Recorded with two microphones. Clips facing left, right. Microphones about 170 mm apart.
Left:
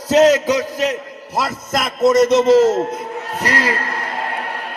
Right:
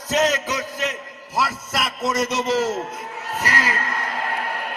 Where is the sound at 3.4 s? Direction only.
35° left (ahead or behind).